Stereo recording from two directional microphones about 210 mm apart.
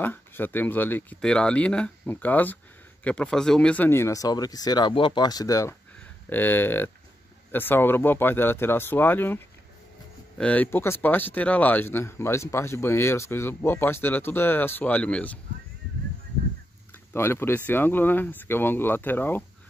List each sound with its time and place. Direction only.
0.0 s speech: 10° left (ahead or behind)
17.1 s speech: 10° left (ahead or behind)